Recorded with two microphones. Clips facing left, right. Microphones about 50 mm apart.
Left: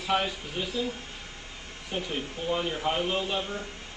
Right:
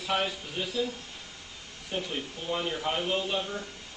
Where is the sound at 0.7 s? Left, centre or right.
Left.